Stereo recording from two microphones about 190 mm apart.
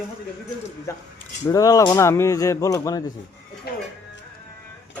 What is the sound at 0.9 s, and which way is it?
Speech, 15° left (ahead or behind).